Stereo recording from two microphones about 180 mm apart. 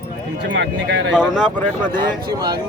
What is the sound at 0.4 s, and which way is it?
Speech, 85° right.